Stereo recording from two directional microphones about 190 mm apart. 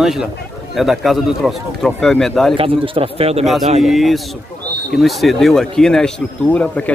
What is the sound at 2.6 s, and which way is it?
Speech, 30° right (ahead or behind).